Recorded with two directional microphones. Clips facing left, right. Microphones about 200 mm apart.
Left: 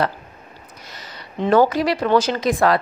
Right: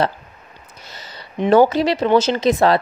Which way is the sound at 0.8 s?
30° right (ahead or behind).